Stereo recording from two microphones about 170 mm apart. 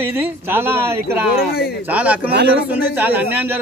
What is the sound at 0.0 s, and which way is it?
A man's voice, 10° right (ahead or behind).